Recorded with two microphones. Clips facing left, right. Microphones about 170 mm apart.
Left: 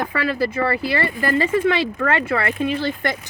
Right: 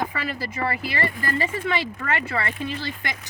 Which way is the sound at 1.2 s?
80° left.